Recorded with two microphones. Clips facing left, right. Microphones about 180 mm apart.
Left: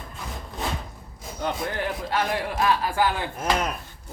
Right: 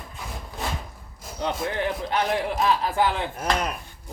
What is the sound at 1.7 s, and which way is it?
Speech, 20° right (ahead or behind).